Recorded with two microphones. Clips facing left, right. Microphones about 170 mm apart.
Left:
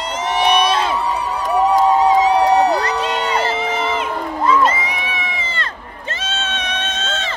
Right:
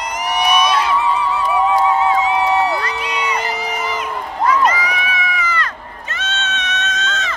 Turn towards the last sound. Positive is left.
turn(degrees=30)  # may be behind; listen again after turning